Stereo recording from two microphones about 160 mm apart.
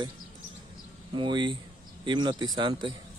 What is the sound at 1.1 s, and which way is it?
Speech, 30° right (ahead or behind).